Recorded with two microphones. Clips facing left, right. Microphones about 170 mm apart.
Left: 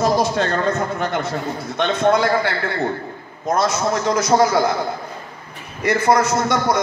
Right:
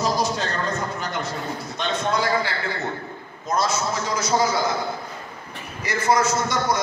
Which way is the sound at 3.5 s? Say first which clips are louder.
Left 5 dB; 60° left (ahead or behind).